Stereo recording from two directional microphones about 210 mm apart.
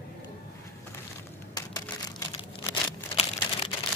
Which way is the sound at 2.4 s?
25° left (ahead or behind).